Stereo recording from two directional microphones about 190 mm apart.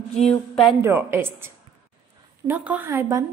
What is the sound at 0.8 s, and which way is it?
Speech, 10° right (ahead or behind).